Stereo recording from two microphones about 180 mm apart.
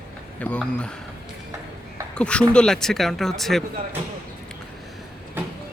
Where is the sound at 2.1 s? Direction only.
5° left (ahead or behind).